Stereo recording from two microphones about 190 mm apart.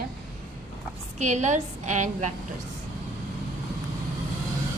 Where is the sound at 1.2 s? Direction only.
40° right (ahead or behind).